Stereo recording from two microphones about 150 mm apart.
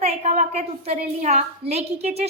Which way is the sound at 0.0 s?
45° right (ahead or behind).